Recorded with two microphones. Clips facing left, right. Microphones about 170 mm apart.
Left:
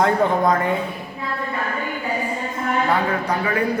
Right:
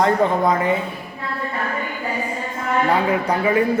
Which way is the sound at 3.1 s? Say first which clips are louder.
Right 3 dB; 20° right (ahead or behind).